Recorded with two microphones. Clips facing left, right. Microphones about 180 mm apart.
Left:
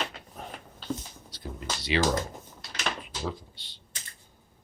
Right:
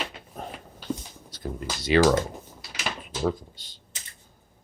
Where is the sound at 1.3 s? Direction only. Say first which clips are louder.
Right 7 dB; 50° right (ahead or behind).